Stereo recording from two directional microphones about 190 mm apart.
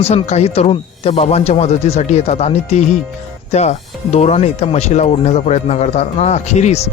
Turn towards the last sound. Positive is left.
turn(degrees=35)  # may be behind; listen again after turning